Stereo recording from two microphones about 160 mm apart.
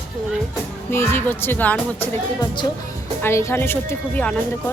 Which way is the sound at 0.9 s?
15° left (ahead or behind).